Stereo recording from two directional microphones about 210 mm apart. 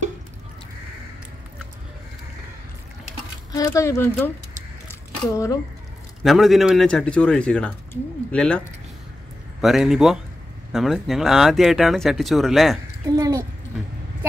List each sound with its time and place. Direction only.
3.5 s speech: 15° left (ahead or behind)
4.8 s a sound: 15° left (ahead or behind)
6.2 s a man's voice: centre (ahead or behind)
13.1 s a child's voice: 15° right (ahead or behind)